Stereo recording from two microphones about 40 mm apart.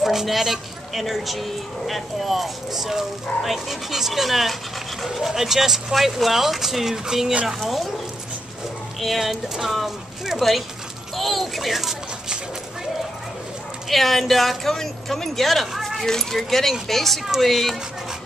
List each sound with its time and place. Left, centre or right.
0.0 s speech: centre
9.0 s speech: centre
13.8 s speech: centre